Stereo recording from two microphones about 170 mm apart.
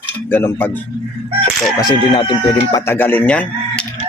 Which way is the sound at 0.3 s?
10° left (ahead or behind).